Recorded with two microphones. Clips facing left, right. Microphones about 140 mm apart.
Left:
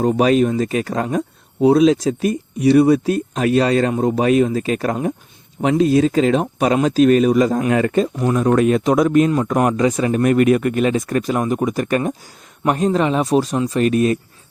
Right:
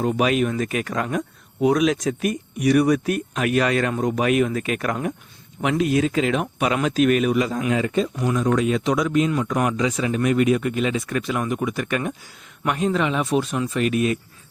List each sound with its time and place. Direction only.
0.0 s speech: 35° left (ahead or behind)
7.7 s speech: 55° left (ahead or behind); by 14.2 s 40° left (ahead or behind)